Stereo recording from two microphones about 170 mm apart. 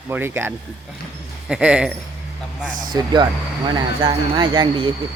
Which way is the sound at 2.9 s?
25° right (ahead or behind).